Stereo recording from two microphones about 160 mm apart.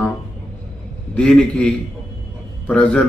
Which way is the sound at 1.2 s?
5° left (ahead or behind).